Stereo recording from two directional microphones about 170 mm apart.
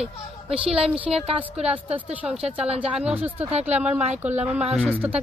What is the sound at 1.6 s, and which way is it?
Speech, 10° right (ahead or behind).